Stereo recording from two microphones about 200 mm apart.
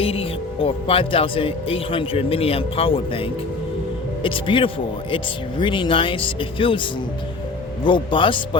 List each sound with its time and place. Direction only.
0.0 s speech: 30° left (ahead or behind)
7.9 s speech: 25° left (ahead or behind)